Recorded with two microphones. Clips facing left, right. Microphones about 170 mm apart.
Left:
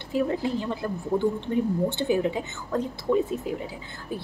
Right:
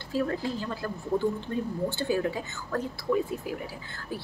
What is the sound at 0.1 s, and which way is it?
A woman's voice, 20° left (ahead or behind).